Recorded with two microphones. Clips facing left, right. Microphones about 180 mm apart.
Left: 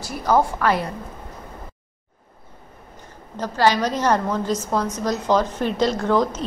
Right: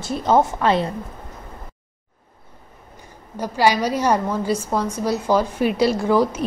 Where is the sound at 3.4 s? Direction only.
10° right (ahead or behind).